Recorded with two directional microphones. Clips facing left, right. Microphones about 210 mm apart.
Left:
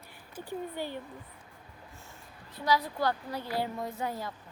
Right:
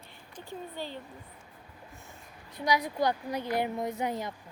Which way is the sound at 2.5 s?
15° right (ahead or behind).